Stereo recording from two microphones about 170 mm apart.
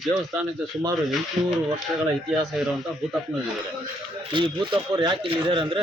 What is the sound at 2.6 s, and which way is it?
Speech, 5° right (ahead or behind).